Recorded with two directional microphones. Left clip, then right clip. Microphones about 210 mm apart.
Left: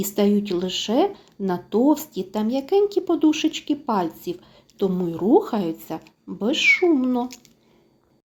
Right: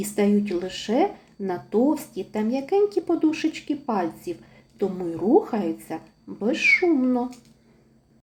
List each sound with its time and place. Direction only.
0.0 s speech: 35° left (ahead or behind)